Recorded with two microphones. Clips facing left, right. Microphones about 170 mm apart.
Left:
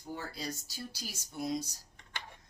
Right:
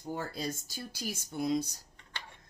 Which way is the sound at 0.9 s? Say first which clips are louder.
Right 7 dB; 55° right (ahead or behind).